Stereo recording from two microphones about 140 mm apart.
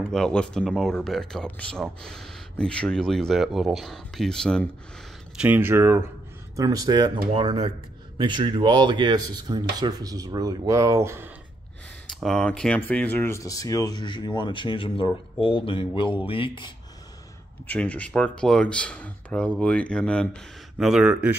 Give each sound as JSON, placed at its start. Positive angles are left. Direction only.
{"t": 0.0, "sound": "speech", "side_deg": 5}
{"t": 5.4, "sound": "speech", "side_deg": -15}
{"t": 6.5, "sound": "rub", "side_deg": -25}
{"t": 7.3, "sound": "speech", "side_deg": -40}
{"t": 8.2, "sound": "rub", "side_deg": -35}
{"t": 12.1, "sound": "speech", "side_deg": 0}
{"t": 17.6, "sound": "speech", "side_deg": 10}
{"t": 20.7, "sound": "speech", "side_deg": -5}